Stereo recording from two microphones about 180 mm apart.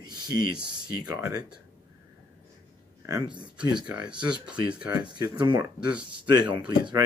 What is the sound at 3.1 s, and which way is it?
Speech, 25° right (ahead or behind).